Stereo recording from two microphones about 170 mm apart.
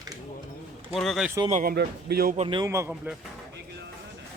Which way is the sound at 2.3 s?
40° right (ahead or behind).